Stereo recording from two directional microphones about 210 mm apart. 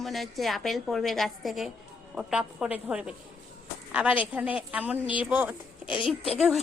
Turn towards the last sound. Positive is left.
turn(degrees=0)  # may be behind; listen again after turning